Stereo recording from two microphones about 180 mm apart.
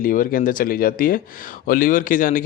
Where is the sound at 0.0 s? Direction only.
50° left (ahead or behind).